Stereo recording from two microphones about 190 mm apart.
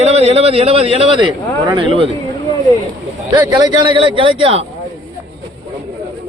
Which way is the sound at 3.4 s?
20° right (ahead or behind).